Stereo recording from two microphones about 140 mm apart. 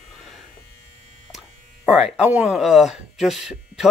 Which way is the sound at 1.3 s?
Centre (ahead or behind).